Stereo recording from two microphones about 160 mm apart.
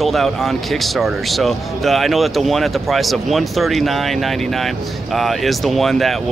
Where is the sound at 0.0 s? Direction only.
Centre (ahead or behind).